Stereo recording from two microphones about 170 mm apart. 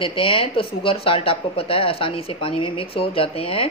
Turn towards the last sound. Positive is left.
turn(degrees=35)  # may be behind; listen again after turning